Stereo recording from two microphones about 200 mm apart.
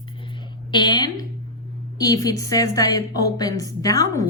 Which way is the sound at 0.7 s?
20° left (ahead or behind).